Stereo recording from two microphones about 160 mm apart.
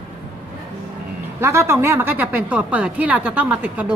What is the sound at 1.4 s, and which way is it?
A woman's voice, 15° right (ahead or behind).